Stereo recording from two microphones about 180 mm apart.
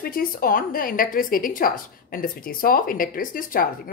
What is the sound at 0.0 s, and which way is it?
Speech, 55° left (ahead or behind).